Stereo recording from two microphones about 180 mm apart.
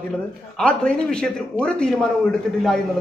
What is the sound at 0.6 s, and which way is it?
A man's voice, 5° left (ahead or behind).